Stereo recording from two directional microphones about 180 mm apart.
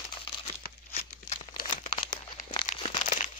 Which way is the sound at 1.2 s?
45° left (ahead or behind).